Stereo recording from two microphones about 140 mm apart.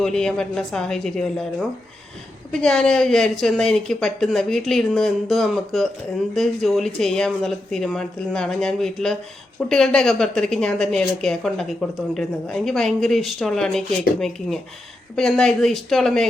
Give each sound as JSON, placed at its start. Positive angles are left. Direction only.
{"t": 0.0, "sound": "a woman's voice", "side_deg": 5}